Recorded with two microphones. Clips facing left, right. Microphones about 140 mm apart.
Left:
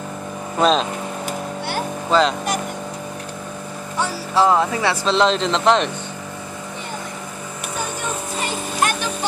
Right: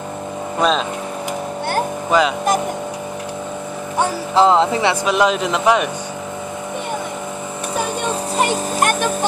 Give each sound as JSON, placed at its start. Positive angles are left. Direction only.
{"t": 0.6, "sound": "speech", "side_deg": 0}
{"t": 2.0, "sound": "speech", "side_deg": -10}
{"t": 4.4, "sound": "speech", "side_deg": -20}
{"t": 5.0, "sound": "speech", "side_deg": -10}
{"t": 8.4, "sound": "a sound", "side_deg": -55}